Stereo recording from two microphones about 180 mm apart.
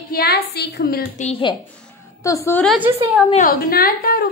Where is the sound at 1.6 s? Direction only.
10° left (ahead or behind).